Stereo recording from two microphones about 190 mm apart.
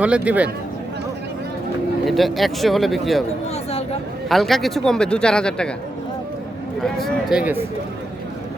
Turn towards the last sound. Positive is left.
turn(degrees=-5)  # may be behind; listen again after turning